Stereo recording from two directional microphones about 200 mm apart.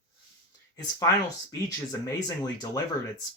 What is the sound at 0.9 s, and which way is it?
Speech, 15° left (ahead or behind).